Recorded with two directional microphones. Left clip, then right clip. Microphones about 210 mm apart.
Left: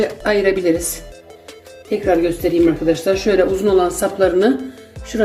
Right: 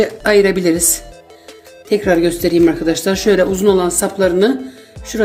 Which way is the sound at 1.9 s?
40° right (ahead or behind).